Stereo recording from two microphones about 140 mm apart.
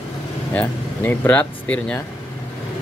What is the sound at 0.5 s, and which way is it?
Speech, 15° left (ahead or behind).